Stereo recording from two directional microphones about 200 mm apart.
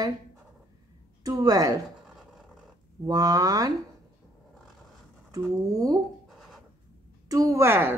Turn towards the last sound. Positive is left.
turn(degrees=-10)  # may be behind; listen again after turning